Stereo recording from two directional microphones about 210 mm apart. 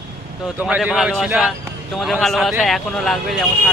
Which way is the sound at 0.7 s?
5° right (ahead or behind).